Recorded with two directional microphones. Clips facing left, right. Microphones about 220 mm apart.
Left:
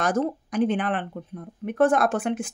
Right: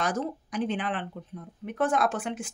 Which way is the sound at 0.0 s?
50° left (ahead or behind).